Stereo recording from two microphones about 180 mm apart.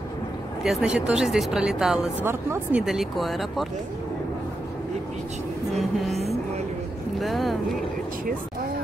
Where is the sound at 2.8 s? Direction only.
Centre (ahead or behind).